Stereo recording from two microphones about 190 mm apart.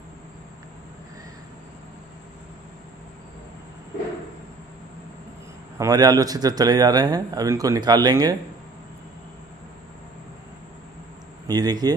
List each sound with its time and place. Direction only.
5.8 s speech: 20° right (ahead or behind)
11.4 s speech: 20° right (ahead or behind)